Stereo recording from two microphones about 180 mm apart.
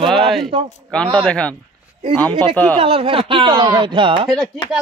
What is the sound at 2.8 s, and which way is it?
Speech, 30° right (ahead or behind).